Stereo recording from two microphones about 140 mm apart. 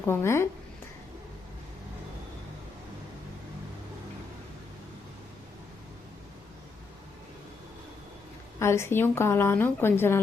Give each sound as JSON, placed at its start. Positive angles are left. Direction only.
{"t": 0.0, "sound": "a woman's voice", "side_deg": 15}
{"t": 8.5, "sound": "a woman's voice", "side_deg": 20}